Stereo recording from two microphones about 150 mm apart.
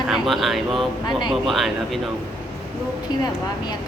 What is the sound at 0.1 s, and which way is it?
Speech, centre (ahead or behind).